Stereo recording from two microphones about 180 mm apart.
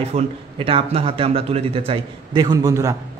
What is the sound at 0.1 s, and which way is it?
A man's voice, 30° right (ahead or behind).